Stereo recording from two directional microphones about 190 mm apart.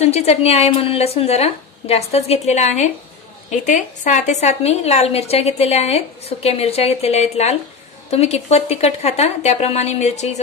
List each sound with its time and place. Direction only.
0.0 s a woman's voice: 35° left (ahead or behind)